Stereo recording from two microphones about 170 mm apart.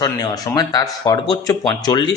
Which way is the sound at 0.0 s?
25° left (ahead or behind).